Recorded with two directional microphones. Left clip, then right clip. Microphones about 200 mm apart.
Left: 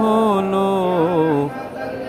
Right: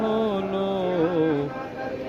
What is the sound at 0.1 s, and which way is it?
Mantra, 60° left (ahead or behind).